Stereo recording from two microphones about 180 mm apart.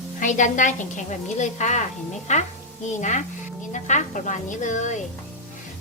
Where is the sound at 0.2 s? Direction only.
45° left (ahead or behind).